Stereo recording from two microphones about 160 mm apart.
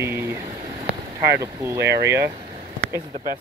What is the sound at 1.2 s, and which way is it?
Speech, 15° right (ahead or behind).